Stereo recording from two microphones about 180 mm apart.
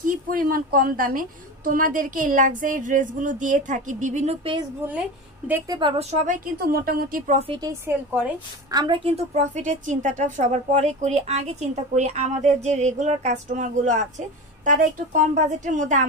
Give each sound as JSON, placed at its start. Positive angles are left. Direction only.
{"t": 0.0, "sound": "a woman's voice", "side_deg": -50}
{"t": 5.8, "sound": "a woman's voice", "side_deg": -30}
{"t": 6.2, "sound": "a woman's voice", "side_deg": -55}
{"t": 7.3, "sound": "a woman's voice", "side_deg": -30}
{"t": 7.9, "sound": "a woman's voice", "side_deg": -15}
{"t": 8.7, "sound": "a woman's voice", "side_deg": -25}